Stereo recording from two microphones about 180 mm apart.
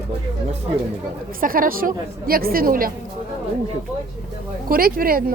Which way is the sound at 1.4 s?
50° right (ahead or behind).